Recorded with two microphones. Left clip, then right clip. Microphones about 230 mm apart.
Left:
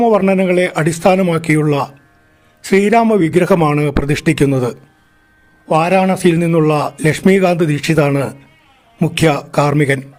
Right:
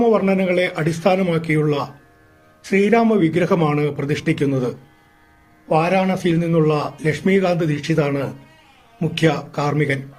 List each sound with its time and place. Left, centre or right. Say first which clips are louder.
0.0 s a man's voice: left 5 dB; left